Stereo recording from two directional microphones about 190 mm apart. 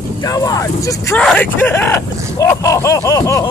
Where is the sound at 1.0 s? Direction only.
5° left (ahead or behind).